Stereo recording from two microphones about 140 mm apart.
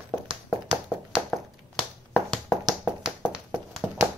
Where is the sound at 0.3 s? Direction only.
5° right (ahead or behind).